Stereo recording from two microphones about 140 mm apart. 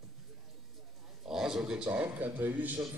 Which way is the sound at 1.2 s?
5° right (ahead or behind).